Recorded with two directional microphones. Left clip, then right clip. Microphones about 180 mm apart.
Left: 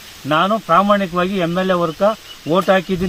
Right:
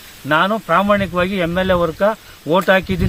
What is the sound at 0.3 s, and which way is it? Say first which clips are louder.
Speech: even; 15° right (ahead or behind).